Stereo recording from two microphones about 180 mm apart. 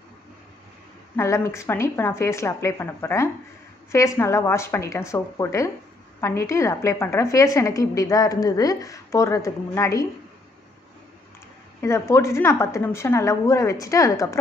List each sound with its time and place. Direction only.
1.1 s a woman's voice: 15° left (ahead or behind)
11.8 s a woman's voice: 15° left (ahead or behind)